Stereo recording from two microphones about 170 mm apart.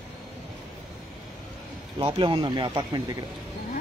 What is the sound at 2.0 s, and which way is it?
Speech, 30° right (ahead or behind).